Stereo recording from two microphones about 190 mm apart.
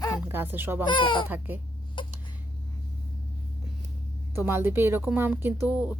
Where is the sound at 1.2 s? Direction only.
10° right (ahead or behind).